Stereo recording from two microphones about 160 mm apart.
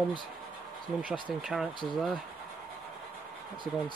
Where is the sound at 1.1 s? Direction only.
Centre (ahead or behind).